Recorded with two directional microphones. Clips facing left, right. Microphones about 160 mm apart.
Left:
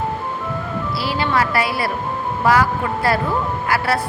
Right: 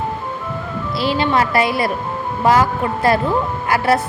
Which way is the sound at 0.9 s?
20° right (ahead or behind).